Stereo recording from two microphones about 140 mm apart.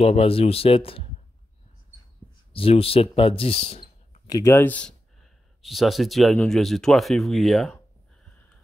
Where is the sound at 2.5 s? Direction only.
40° left (ahead or behind).